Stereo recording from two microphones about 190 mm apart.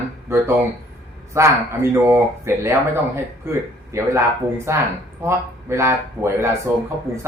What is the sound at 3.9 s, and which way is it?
Speech, 15° right (ahead or behind).